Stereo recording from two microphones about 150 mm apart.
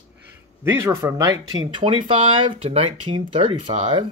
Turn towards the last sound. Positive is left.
turn(degrees=-35)  # may be behind; listen again after turning